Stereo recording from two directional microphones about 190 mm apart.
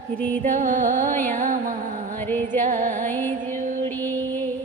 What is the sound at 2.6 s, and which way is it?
Music, 40° right (ahead or behind).